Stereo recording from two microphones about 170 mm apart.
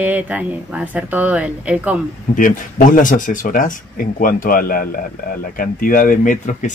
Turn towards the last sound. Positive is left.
turn(degrees=50)  # may be behind; listen again after turning